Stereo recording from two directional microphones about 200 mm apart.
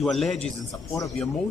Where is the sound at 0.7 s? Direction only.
15° left (ahead or behind).